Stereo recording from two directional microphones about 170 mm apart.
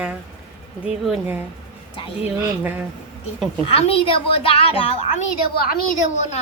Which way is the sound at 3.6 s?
35° left (ahead or behind).